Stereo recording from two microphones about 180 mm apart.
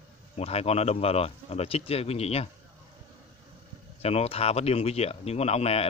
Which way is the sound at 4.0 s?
35° left (ahead or behind).